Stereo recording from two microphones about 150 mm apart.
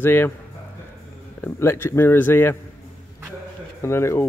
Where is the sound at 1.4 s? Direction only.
15° left (ahead or behind).